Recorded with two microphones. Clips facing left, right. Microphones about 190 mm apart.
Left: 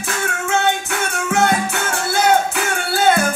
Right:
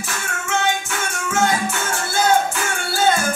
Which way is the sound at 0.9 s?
60° left (ahead or behind).